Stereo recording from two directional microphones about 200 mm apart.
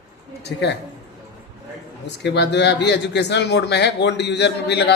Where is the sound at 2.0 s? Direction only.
60° left (ahead or behind).